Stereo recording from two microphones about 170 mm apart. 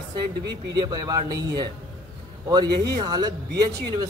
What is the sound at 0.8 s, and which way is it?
A man's voice, 25° right (ahead or behind).